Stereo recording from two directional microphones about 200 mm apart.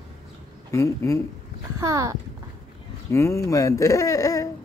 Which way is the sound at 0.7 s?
15° left (ahead or behind).